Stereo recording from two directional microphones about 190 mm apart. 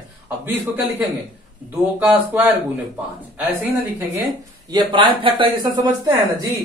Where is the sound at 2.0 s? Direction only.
10° right (ahead or behind).